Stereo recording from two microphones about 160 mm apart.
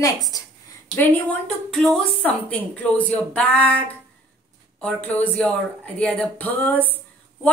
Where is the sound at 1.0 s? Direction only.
5° left (ahead or behind).